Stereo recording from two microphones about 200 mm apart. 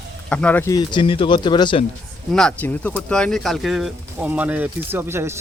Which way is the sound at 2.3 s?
5° left (ahead or behind).